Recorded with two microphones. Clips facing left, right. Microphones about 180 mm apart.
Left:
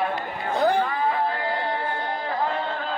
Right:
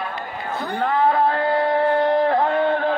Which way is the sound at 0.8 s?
80° right.